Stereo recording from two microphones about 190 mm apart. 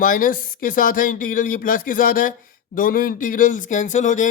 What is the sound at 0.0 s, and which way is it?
Speech, 45° left (ahead or behind).